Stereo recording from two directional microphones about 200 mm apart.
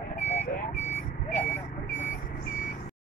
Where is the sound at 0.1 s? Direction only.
35° left (ahead or behind).